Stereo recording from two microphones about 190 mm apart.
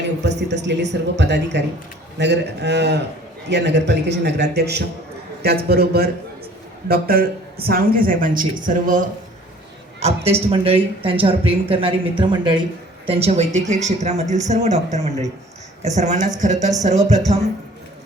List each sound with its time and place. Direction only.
0.2 s a woman's voice: 65° right (ahead or behind); by 17.4 s 35° right (ahead or behind)